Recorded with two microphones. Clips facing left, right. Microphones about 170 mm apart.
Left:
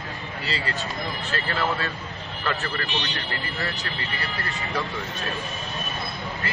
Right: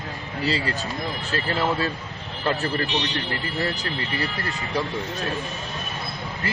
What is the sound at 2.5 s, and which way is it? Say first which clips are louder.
Speech: right 5 dB; 30° right (ahead or behind).